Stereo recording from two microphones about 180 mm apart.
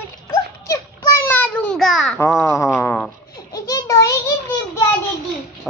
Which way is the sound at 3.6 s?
20° left (ahead or behind).